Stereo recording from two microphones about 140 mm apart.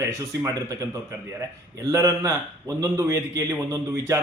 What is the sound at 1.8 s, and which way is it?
Speech, 25° right (ahead or behind).